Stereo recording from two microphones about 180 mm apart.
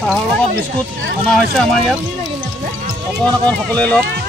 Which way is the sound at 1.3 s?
Centre (ahead or behind).